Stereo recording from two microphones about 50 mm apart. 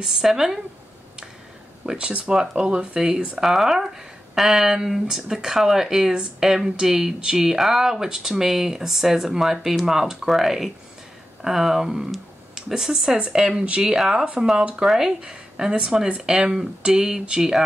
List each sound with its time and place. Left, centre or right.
0.0 s speech: centre
1.9 s speech: right